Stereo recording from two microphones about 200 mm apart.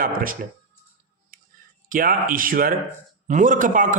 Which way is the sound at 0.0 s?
45° right (ahead or behind).